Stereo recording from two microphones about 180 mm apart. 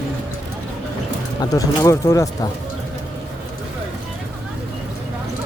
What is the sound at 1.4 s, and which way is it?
Speech, 20° left (ahead or behind).